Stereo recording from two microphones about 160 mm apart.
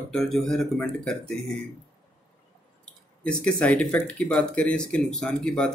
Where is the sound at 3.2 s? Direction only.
5° left (ahead or behind).